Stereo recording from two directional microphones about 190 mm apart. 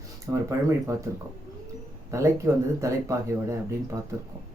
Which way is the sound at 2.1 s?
15° right (ahead or behind).